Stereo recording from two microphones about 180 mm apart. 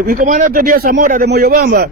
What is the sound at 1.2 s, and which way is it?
Speech, 60° right (ahead or behind).